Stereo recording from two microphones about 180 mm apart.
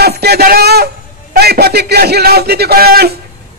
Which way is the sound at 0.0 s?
65° right (ahead or behind).